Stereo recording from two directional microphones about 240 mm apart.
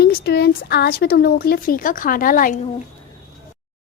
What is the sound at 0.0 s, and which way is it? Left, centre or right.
A woman's voice, left.